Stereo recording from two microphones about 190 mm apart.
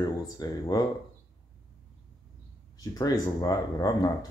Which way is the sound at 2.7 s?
20° left (ahead or behind).